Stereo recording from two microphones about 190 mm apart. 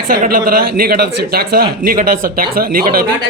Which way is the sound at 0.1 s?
50° right (ahead or behind).